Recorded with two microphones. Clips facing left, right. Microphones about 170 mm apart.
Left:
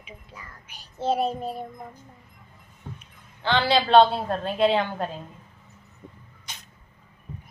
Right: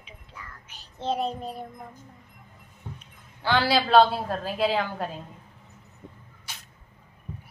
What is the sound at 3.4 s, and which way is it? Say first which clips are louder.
A child's voice: left 1 dB; 5° right (ahead or behind).